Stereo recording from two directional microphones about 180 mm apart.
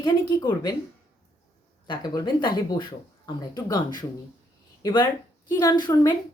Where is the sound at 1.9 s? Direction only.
25° left (ahead or behind).